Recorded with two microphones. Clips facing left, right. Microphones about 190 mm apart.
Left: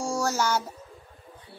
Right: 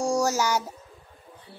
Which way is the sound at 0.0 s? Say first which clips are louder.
Right 3 dB; 15° right (ahead or behind).